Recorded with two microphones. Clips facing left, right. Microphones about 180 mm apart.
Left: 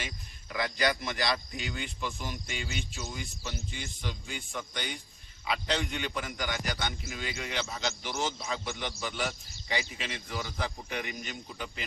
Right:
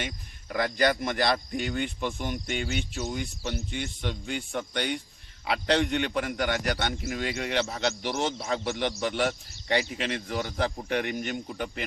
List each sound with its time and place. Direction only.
0.5 s a man's voice: 50° right (ahead or behind)